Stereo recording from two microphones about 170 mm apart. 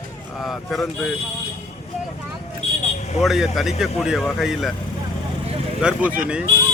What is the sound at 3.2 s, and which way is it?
Speech, centre (ahead or behind).